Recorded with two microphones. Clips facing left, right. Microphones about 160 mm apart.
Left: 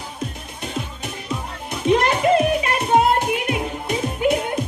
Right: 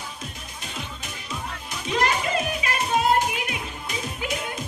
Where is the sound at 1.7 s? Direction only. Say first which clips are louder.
Left 7 dB; 60° left (ahead or behind).